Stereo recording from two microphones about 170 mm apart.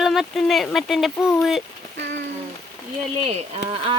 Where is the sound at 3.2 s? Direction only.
35° right (ahead or behind).